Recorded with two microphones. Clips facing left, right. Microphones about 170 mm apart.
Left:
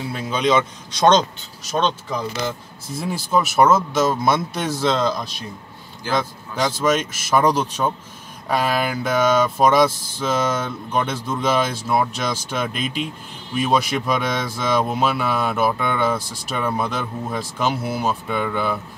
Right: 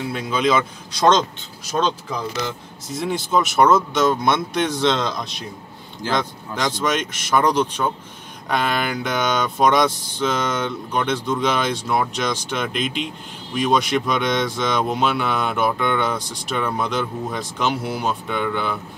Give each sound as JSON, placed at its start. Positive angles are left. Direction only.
{"t": 0.1, "sound": "speech", "side_deg": -5}
{"t": 3.0, "sound": "speech", "side_deg": 5}